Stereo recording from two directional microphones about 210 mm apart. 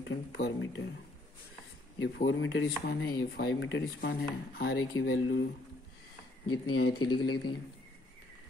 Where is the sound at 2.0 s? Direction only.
65° left (ahead or behind).